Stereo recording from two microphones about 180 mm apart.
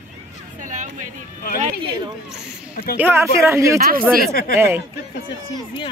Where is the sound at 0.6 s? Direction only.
45° right (ahead or behind).